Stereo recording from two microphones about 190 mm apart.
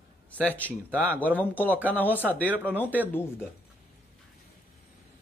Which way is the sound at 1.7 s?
10° right (ahead or behind).